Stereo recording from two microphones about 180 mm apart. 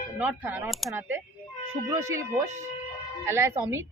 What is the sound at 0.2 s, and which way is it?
Speech, 10° right (ahead or behind).